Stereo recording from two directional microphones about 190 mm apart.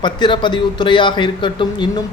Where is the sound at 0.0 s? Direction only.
25° left (ahead or behind).